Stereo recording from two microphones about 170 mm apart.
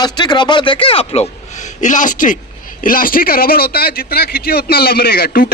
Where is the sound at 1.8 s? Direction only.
50° left (ahead or behind).